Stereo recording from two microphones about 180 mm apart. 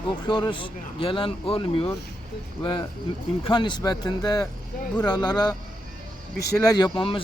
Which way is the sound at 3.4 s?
25° left (ahead or behind).